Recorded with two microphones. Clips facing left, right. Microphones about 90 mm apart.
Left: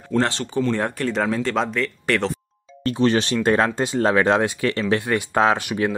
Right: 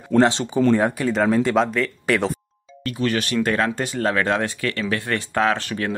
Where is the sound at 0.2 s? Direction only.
20° right (ahead or behind).